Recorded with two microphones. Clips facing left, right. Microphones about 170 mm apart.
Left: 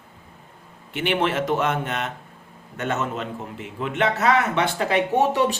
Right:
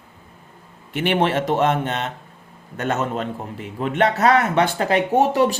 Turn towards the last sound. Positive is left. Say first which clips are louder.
# right 2 dB
turn(degrees=-45)  # may be behind; listen again after turning